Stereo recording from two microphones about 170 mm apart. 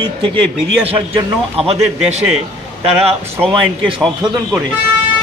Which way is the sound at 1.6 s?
40° right (ahead or behind).